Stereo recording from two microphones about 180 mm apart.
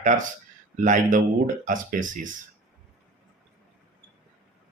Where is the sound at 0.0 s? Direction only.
45° right (ahead or behind).